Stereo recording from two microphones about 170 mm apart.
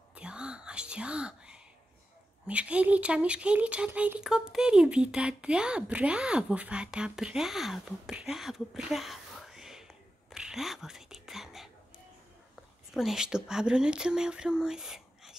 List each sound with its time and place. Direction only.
0.1 s whispering: 5° right (ahead or behind)
2.4 s speech: 5° right (ahead or behind)
12.9 s speech: centre (ahead or behind)